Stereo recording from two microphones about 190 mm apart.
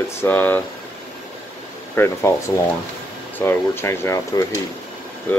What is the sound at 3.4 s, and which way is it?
Speech, 10° left (ahead or behind).